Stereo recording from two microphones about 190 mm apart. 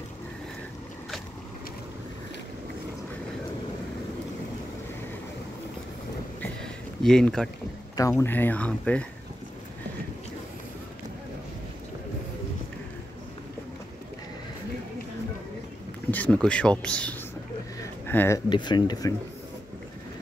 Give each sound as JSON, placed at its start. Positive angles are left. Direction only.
{"t": 6.4, "sound": "a sound", "side_deg": 5}
{"t": 7.9, "sound": "speech", "side_deg": 15}
{"t": 16.1, "sound": "speech", "side_deg": 5}
{"t": 18.5, "sound": "speech", "side_deg": 25}